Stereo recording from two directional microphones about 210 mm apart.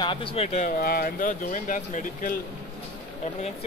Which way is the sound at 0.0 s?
25° left (ahead or behind).